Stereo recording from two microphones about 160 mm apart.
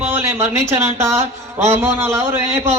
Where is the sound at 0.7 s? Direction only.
15° right (ahead or behind).